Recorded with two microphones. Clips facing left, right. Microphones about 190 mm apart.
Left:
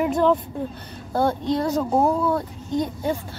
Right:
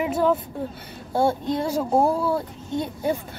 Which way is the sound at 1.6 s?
30° right (ahead or behind).